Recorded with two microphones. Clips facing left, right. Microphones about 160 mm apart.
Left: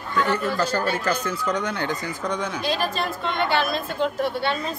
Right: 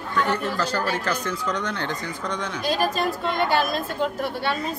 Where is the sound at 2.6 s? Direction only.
40° right (ahead or behind).